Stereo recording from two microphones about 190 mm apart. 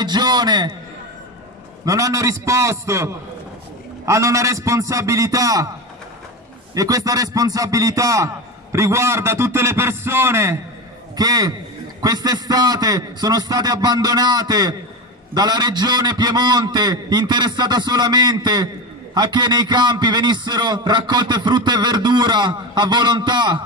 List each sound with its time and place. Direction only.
0.0 s a sound: 20° right (ahead or behind)
1.9 s a man's voice: 15° right (ahead or behind)
6.7 s a man's voice: 20° right (ahead or behind)